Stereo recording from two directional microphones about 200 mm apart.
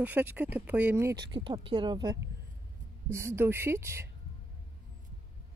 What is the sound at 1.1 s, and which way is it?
Speech, 20° right (ahead or behind).